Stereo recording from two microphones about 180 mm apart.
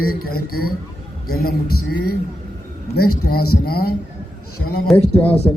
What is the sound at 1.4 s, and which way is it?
Speech, 60° left (ahead or behind).